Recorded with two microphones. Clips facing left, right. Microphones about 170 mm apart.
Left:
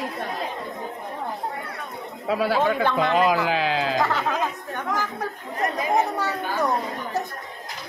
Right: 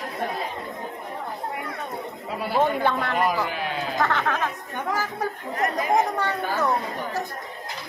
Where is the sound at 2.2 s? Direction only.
90° left.